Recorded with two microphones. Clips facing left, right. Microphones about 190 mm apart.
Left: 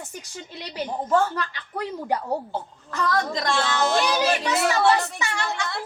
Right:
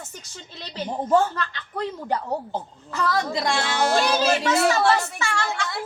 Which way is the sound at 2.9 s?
10° right (ahead or behind).